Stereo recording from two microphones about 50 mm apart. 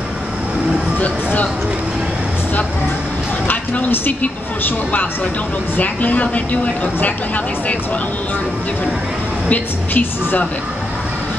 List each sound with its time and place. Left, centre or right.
0.9 s speech: left
3.4 s speech: left
9.5 s speech: left